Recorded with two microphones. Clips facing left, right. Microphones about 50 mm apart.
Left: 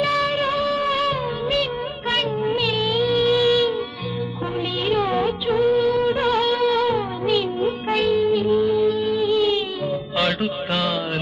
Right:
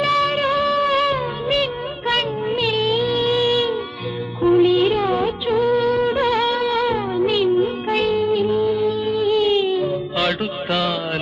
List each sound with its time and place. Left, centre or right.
0.0 s music: right
3.1 s music: right
4.8 s music of bollywood: centre
6.3 s music: right
8.3 s music: centre
9.3 s music: right
10.4 s mantra: centre